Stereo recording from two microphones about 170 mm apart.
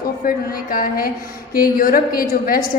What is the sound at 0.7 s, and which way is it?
A woman's voice, 60° left (ahead or behind).